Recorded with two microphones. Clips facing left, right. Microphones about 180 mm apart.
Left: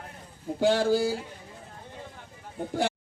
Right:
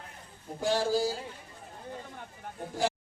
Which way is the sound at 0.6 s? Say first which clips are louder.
Left 5 dB; 60° left (ahead or behind).